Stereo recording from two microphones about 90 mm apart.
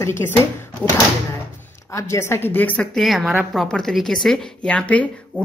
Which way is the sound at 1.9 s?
30° left (ahead or behind).